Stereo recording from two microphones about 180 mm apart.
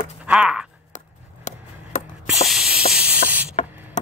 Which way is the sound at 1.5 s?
40° left (ahead or behind).